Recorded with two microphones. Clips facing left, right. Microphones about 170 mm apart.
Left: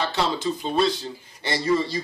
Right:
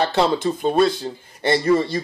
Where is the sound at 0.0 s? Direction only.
55° right (ahead or behind).